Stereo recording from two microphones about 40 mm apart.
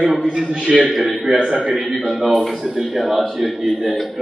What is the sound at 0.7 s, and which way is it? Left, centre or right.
A man's voice, centre.